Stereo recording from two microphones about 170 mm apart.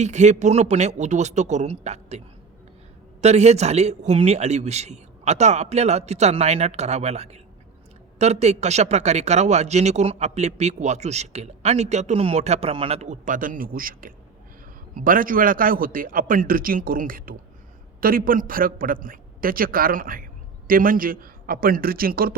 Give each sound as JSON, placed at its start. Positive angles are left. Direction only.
{"t": 0.0, "sound": "a man's voice", "side_deg": -45}